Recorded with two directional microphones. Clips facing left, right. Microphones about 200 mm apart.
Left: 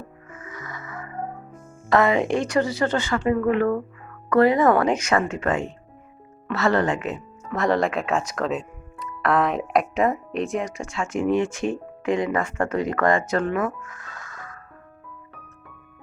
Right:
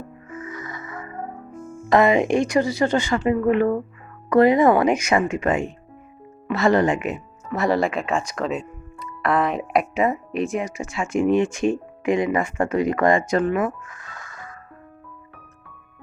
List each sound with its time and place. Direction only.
0.5 s music: 20° right (ahead or behind)
1.9 s a woman's voice: 15° right (ahead or behind)